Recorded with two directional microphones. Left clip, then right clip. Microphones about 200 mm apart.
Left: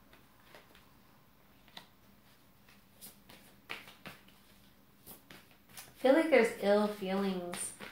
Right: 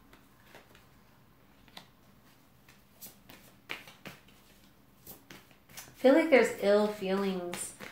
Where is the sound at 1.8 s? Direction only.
Centre (ahead or behind).